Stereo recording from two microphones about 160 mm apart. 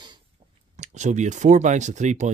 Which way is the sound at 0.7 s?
50° right (ahead or behind).